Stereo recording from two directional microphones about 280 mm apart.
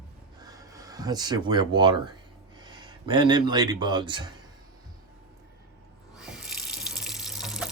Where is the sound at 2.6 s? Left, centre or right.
Centre.